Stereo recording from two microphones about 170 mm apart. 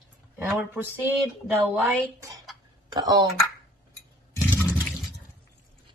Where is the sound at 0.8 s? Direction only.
10° right (ahead or behind); by 3.2 s 25° right (ahead or behind).